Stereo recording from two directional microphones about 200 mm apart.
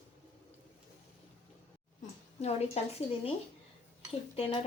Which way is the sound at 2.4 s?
30° left (ahead or behind).